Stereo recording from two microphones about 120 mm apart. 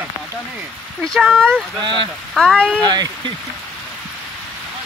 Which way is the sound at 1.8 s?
40° right (ahead or behind).